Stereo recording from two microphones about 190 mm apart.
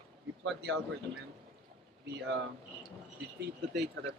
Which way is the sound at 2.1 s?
60° right (ahead or behind).